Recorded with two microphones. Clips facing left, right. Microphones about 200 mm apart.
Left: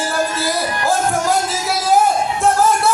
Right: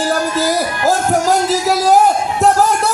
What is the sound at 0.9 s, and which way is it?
Music, 40° right (ahead or behind).